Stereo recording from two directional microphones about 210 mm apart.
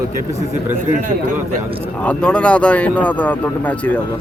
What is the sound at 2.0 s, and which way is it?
Speech, 5° left (ahead or behind).